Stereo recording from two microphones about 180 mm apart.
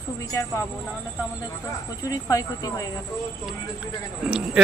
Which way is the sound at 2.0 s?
20° left (ahead or behind).